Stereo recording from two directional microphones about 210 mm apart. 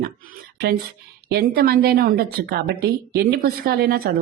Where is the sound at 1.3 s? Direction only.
45° right (ahead or behind).